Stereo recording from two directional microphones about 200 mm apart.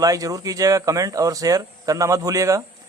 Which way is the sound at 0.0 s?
15° right (ahead or behind).